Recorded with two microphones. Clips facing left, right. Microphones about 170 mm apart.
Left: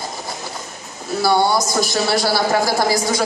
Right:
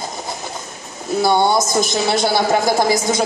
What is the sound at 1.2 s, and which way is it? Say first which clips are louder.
A woman's voice: right 1 dB; 20° right (ahead or behind).